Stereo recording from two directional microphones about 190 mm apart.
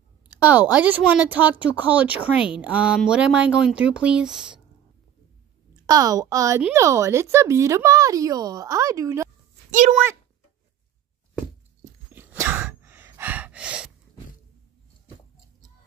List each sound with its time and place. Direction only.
0.5 s speech: 5° right (ahead or behind)
5.9 s speech: 20° right (ahead or behind)
12.1 s gasp: 10° right (ahead or behind)